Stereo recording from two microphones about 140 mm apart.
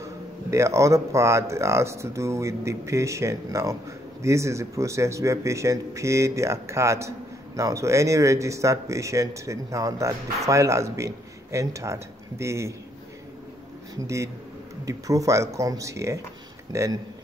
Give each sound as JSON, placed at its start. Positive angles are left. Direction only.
{"t": 0.0, "sound": "speech", "side_deg": -20}
{"t": 14.0, "sound": "speech", "side_deg": -20}